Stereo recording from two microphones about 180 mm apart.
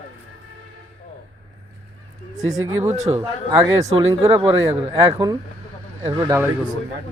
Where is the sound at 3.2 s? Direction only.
15° right (ahead or behind).